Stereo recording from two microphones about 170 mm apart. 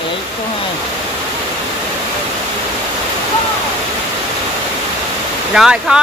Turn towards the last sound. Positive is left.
turn(degrees=-5)  # may be behind; listen again after turning